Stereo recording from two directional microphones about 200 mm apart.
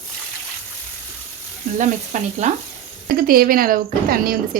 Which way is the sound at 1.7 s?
35° right (ahead or behind).